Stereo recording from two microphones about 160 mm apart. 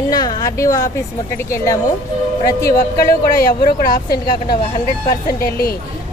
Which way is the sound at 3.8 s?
70° left (ahead or behind).